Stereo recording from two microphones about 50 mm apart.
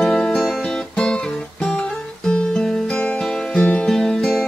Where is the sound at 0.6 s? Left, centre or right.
Centre.